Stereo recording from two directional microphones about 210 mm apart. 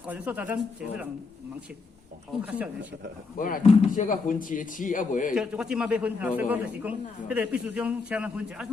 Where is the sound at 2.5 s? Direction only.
5° right (ahead or behind).